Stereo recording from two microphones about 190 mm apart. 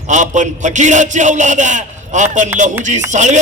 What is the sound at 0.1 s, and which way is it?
A man's voice, 40° right (ahead or behind).